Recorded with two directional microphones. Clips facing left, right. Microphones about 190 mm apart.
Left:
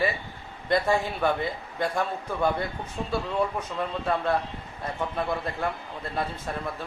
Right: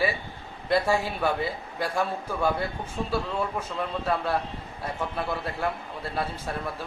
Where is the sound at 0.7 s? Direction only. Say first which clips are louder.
Even; 5° right (ahead or behind).